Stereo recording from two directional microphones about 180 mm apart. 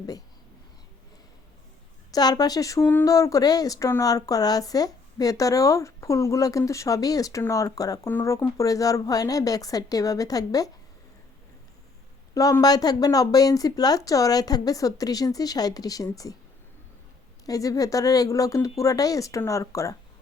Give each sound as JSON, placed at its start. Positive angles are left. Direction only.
{"t": 2.1, "sound": "speech", "side_deg": 20}
{"t": 12.3, "sound": "speech", "side_deg": 20}
{"t": 17.4, "sound": "speech", "side_deg": 20}